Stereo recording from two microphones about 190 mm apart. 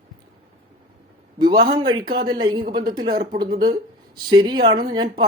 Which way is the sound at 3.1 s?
50° right (ahead or behind).